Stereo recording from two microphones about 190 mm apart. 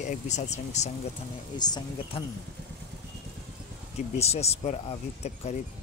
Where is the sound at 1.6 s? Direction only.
20° left (ahead or behind).